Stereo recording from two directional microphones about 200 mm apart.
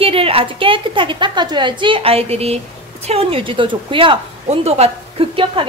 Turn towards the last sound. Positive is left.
turn(degrees=-25)  # may be behind; listen again after turning